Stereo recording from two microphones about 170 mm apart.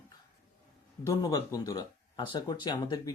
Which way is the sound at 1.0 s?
20° left (ahead or behind).